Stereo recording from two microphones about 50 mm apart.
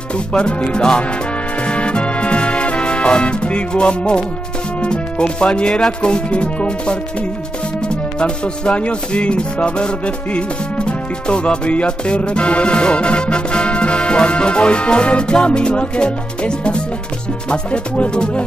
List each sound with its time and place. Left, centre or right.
0.3 s music: centre
4.8 s speech: centre
7.9 s music: centre